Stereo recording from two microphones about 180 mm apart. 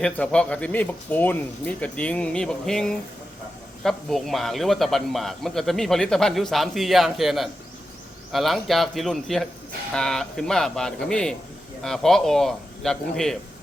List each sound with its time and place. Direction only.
0.0 s speech: 5° left (ahead or behind)